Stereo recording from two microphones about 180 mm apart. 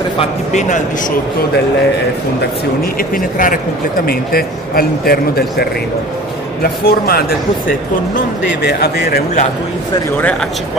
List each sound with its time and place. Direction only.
0.2 s a man's voice: 40° left (ahead or behind)
3.2 s a man's voice: 50° left (ahead or behind)
8.6 s a man's voice: 60° left (ahead or behind)